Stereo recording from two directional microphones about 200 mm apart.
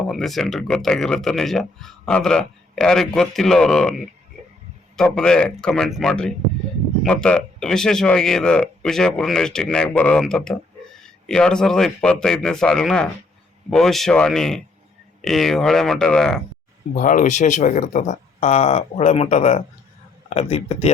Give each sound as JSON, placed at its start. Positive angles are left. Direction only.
{"t": 0.0, "sound": "speech", "side_deg": 0}
{"t": 16.9, "sound": "speech", "side_deg": 40}